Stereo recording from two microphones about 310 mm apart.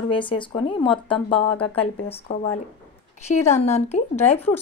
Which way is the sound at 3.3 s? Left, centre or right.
Left.